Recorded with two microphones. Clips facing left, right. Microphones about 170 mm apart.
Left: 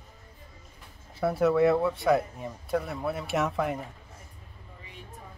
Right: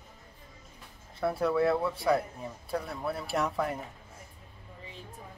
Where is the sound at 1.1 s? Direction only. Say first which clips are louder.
Left 4 dB; centre (ahead or behind).